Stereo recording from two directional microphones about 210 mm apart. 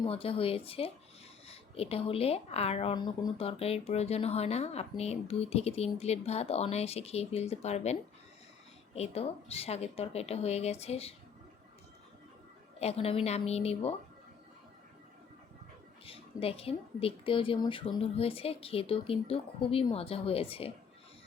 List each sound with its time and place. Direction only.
0.0 s speech: 25° left (ahead or behind)
9.0 s speech: 30° left (ahead or behind)
12.8 s speech: 30° left (ahead or behind)
16.0 s speech: 25° left (ahead or behind)